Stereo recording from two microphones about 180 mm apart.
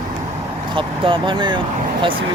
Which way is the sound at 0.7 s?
30° right (ahead or behind).